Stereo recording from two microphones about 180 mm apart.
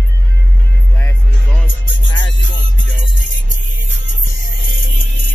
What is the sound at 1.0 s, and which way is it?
Music, 10° left (ahead or behind).